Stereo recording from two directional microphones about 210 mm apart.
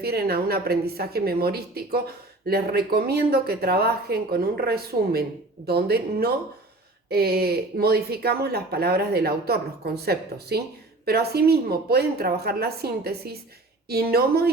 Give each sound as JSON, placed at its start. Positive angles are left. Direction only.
{"t": 0.0, "sound": "speech", "side_deg": -45}